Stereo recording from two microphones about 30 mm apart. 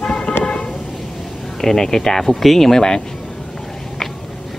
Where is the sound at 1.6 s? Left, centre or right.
Centre.